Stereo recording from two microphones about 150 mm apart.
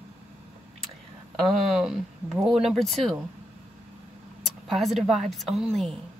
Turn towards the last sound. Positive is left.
turn(degrees=0)  # may be behind; listen again after turning